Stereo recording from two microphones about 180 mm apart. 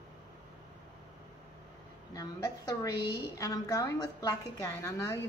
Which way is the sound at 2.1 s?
20° left (ahead or behind).